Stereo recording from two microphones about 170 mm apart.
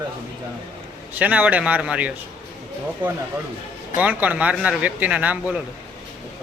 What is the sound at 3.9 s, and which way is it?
Speech, 10° right (ahead or behind).